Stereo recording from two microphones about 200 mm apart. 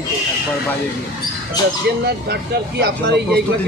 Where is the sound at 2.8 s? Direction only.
55° right (ahead or behind).